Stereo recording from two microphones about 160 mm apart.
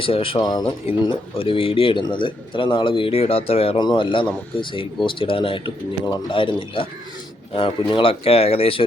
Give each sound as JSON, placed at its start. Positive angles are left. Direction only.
{"t": 0.0, "sound": "speech", "side_deg": 35}